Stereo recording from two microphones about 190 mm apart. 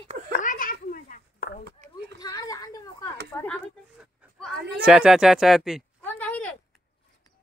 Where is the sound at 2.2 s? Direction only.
20° left (ahead or behind).